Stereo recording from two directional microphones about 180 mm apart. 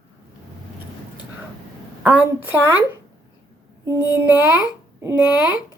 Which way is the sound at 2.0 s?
10° right (ahead or behind).